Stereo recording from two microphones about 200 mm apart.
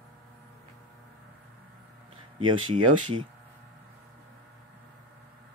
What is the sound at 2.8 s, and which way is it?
Speech, 90° right.